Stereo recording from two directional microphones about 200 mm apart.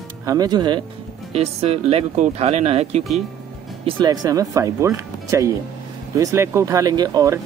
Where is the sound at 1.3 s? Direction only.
30° right (ahead or behind).